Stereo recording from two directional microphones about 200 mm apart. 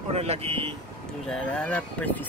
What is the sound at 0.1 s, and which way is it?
Speech, 30° right (ahead or behind).